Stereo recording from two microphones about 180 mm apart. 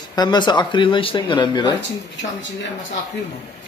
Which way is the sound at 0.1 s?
25° left (ahead or behind).